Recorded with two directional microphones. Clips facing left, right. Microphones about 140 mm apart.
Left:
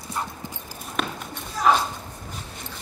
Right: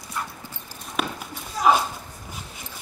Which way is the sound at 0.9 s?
5° right (ahead or behind).